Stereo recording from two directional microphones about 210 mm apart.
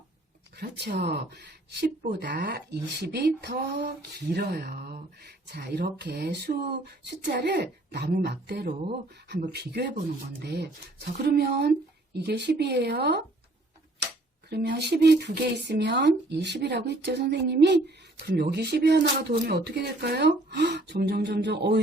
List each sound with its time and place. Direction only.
0.5 s speech: 50° right (ahead or behind)
14.5 s speech: 50° right (ahead or behind)